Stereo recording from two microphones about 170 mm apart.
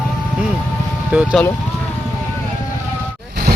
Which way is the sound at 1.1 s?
5° right (ahead or behind).